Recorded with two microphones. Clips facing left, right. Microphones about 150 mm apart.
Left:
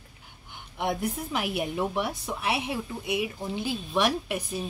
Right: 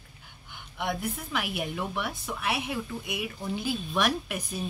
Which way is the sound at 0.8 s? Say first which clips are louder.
Left 3 dB; 35° left (ahead or behind).